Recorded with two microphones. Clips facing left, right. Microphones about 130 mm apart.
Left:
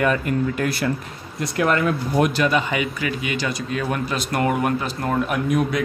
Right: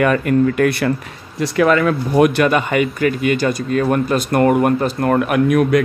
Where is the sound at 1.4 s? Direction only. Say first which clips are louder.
Right 6 dB; 90° right.